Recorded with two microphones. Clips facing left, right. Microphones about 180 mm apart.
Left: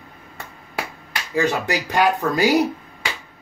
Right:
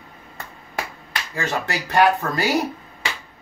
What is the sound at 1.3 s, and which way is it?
Speech, 15° left (ahead or behind).